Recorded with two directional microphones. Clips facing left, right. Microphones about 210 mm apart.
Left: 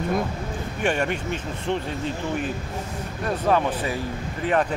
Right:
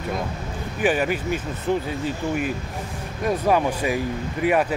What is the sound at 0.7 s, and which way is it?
Speech, 5° right (ahead or behind).